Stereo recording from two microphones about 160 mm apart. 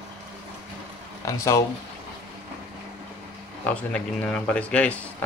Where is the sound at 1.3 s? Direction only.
15° left (ahead or behind).